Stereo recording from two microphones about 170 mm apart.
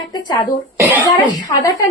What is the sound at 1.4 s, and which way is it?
Speech, 20° left (ahead or behind).